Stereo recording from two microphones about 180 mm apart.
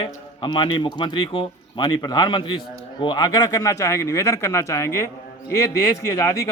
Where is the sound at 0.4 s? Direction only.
25° left (ahead or behind).